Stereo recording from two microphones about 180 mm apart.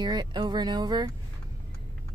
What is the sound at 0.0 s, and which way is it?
Speech, 25° right (ahead or behind).